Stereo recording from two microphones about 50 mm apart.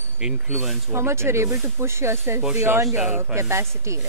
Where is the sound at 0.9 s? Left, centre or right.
Right.